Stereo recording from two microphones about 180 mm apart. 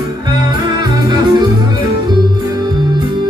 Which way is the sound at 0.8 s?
25° right (ahead or behind).